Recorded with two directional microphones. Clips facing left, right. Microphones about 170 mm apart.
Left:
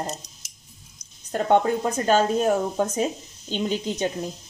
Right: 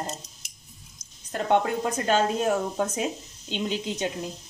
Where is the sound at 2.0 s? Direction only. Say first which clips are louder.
Left 4 dB; 35° left (ahead or behind).